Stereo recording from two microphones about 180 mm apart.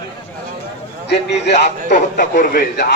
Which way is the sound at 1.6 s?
40° left (ahead or behind).